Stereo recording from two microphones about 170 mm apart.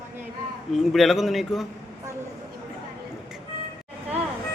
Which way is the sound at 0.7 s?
Centre (ahead or behind).